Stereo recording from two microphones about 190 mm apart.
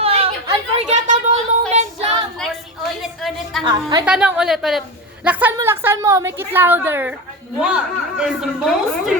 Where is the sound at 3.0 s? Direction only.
Centre (ahead or behind).